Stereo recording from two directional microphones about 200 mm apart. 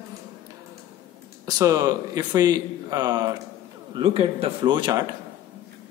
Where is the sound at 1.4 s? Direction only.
15° right (ahead or behind).